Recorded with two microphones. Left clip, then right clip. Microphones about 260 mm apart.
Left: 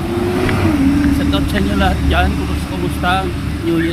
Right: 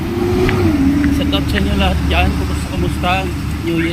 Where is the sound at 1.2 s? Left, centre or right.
Centre.